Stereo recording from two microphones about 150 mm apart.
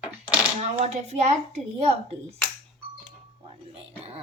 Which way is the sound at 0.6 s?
45° right (ahead or behind).